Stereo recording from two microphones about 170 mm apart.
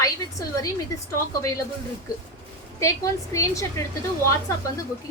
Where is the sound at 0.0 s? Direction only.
20° left (ahead or behind).